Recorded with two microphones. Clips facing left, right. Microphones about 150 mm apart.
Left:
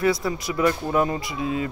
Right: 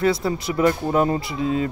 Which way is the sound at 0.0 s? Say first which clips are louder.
Right 2 dB; 25° right (ahead or behind).